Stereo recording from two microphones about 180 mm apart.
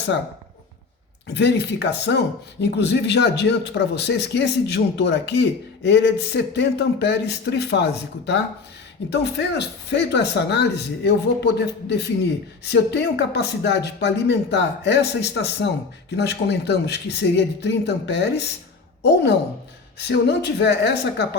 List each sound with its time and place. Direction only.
1.3 s speech: 70° left (ahead or behind)
9.0 s speech: 70° left (ahead or behind)
20.0 s speech: 70° left (ahead or behind)